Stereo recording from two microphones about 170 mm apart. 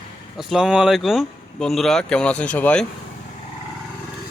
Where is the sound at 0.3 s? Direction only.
5° right (ahead or behind).